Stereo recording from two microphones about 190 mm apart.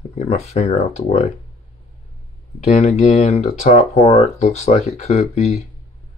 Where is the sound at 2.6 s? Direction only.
35° left (ahead or behind).